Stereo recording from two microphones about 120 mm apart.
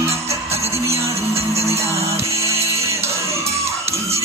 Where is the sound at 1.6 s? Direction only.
25° right (ahead or behind).